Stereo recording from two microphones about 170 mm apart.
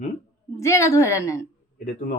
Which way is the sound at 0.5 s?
15° left (ahead or behind).